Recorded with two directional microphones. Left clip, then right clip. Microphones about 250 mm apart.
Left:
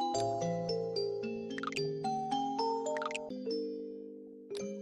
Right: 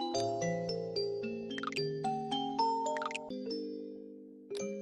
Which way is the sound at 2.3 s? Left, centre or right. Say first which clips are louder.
Right 3 dB; centre.